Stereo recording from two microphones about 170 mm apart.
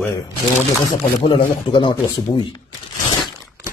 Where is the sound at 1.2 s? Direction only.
25° left (ahead or behind).